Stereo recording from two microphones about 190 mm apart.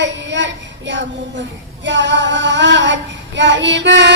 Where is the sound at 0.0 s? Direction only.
70° right (ahead or behind).